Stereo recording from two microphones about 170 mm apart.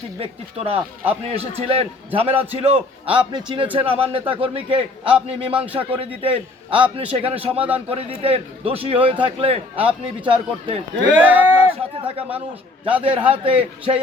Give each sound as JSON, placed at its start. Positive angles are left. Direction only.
{"t": 0.2, "sound": "a man's voice", "side_deg": -35}
{"t": 11.1, "sound": "speech", "side_deg": -10}
{"t": 12.0, "sound": "a man's voice", "side_deg": -35}